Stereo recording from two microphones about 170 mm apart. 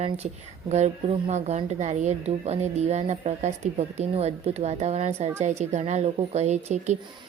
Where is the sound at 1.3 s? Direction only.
40° right (ahead or behind).